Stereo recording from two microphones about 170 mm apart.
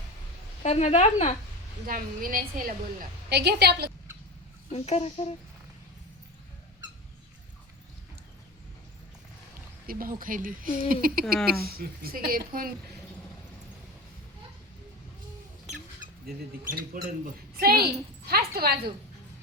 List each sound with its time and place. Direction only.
0.6 s speech: 40° left (ahead or behind)
1.9 s speech: 55° right (ahead or behind)
3.2 s a woman's voice: 75° right (ahead or behind)
4.7 s speech: 35° left (ahead or behind)
9.8 s speech: 60° right (ahead or behind)
16.9 s speech: 55° right (ahead or behind)